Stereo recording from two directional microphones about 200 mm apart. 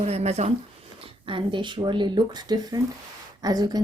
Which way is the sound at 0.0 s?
30° right (ahead or behind).